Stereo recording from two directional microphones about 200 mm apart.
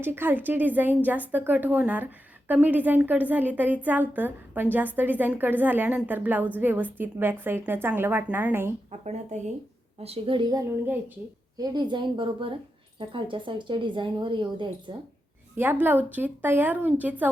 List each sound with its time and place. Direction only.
0.0 s a woman's voice: 10° right (ahead or behind)
8.9 s speech: 35° right (ahead or behind)
15.5 s a woman's voice: 10° right (ahead or behind)